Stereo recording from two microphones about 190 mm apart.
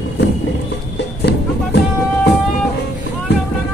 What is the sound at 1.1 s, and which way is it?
Music, 60° left (ahead or behind).